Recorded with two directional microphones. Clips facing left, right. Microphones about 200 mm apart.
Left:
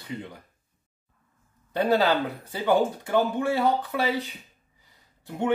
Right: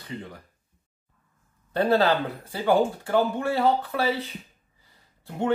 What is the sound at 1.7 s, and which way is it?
Speech, 15° left (ahead or behind).